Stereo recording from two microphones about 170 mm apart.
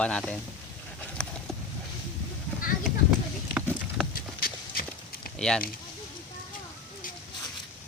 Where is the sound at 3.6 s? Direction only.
5° right (ahead or behind).